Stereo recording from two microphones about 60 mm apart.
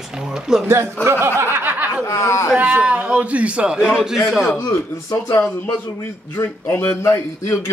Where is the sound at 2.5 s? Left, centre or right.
Right.